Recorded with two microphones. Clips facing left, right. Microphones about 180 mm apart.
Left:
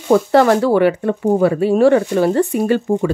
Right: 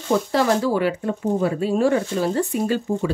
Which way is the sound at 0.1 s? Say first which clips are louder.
Left 7 dB; 65° left (ahead or behind).